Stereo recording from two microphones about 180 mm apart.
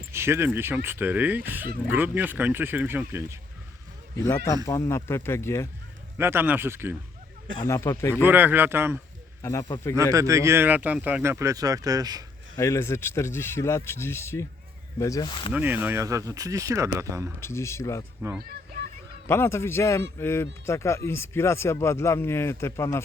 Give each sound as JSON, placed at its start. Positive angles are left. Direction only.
{"t": 0.1, "sound": "speech", "side_deg": -15}
{"t": 4.2, "sound": "a man's voice", "side_deg": 20}
{"t": 6.1, "sound": "speech", "side_deg": -10}
{"t": 7.6, "sound": "a man's voice", "side_deg": 15}
{"t": 8.1, "sound": "speech", "side_deg": -10}
{"t": 9.4, "sound": "a man's voice", "side_deg": 15}
{"t": 9.9, "sound": "speech", "side_deg": -15}
{"t": 12.5, "sound": "a man's voice", "side_deg": 15}
{"t": 15.5, "sound": "speech", "side_deg": -10}
{"t": 17.4, "sound": "a man's voice", "side_deg": 15}
{"t": 18.4, "sound": "a sound", "side_deg": -55}
{"t": 19.3, "sound": "a man's voice", "side_deg": 15}